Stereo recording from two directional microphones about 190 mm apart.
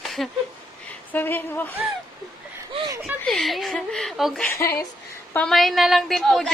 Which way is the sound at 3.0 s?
Centre (ahead or behind).